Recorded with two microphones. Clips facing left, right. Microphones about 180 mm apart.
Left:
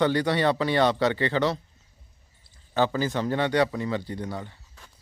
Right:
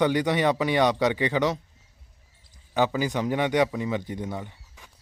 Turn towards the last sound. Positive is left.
turn(degrees=-15)  # may be behind; listen again after turning